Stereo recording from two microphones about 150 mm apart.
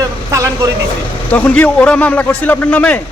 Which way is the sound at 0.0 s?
20° right (ahead or behind).